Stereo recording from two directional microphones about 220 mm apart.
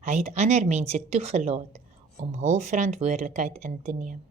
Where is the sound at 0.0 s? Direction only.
30° right (ahead or behind).